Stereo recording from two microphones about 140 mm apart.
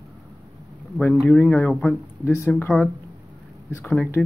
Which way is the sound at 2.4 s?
15° left (ahead or behind).